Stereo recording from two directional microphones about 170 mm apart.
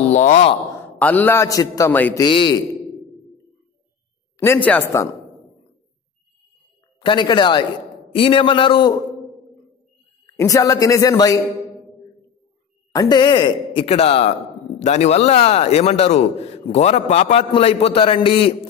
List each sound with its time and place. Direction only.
0.1 s speech: 45° left (ahead or behind)
0.9 s a man's voice: 10° left (ahead or behind)
2.1 s speech: 25° left (ahead or behind)
4.6 s a man's voice: 15° left (ahead or behind)
7.0 s a man's voice: 25° left (ahead or behind)
10.2 s speech: 20° left (ahead or behind)
12.9 s a man's voice: 25° left (ahead or behind)